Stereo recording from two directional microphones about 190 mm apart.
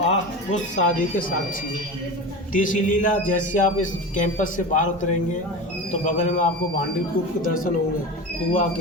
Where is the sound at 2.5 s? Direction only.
45° left (ahead or behind).